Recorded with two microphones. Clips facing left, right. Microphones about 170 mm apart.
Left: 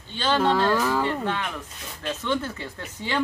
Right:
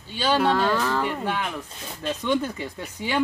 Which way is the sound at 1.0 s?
10° right (ahead or behind).